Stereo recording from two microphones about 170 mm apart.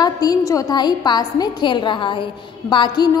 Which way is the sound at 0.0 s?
20° left (ahead or behind).